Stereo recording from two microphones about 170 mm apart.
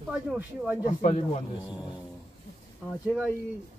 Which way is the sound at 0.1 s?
10° right (ahead or behind).